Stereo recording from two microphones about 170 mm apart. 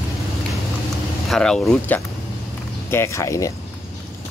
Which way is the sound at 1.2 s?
5° left (ahead or behind).